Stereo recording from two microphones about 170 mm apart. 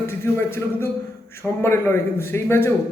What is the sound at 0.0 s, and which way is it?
A man's voice, 15° left (ahead or behind).